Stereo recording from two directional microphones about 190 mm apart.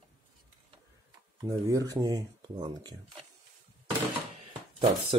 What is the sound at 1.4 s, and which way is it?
Speech, 20° right (ahead or behind).